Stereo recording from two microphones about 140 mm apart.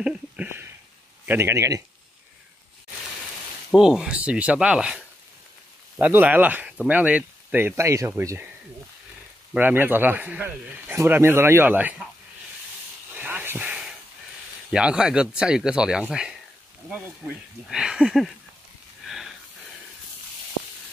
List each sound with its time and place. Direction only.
0.0 s speech: 5° right (ahead or behind)
3.7 s speech: 5° right (ahead or behind)
9.5 s speech: 10° right (ahead or behind)
13.1 s a sound: 10° right (ahead or behind)
14.7 s speech: 5° right (ahead or behind)
17.6 s speech: 5° right (ahead or behind)
19.0 s a sound: centre (ahead or behind)